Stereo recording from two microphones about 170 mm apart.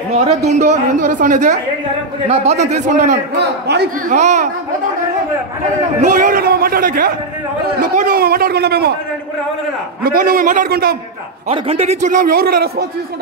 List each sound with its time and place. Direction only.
0.2 s a man's voice: 40° right (ahead or behind)
3.3 s a man's voice: 75° right (ahead or behind)
4.1 s a man's voice: 45° right (ahead or behind)
5.9 s a man's voice: 50° right (ahead or behind); by 8.9 s 70° right (ahead or behind)
10.0 s a man's voice: 55° right (ahead or behind)
11.4 s a man's voice: 35° right (ahead or behind); by 12.8 s 65° right (ahead or behind)